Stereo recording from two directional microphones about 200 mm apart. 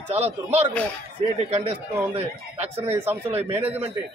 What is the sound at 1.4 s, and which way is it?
Speech, 30° right (ahead or behind).